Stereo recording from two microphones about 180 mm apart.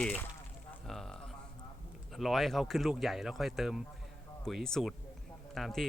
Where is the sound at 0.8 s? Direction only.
Centre (ahead or behind).